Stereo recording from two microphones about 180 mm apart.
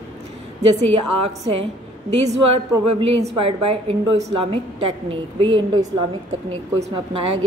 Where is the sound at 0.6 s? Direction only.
35° right (ahead or behind).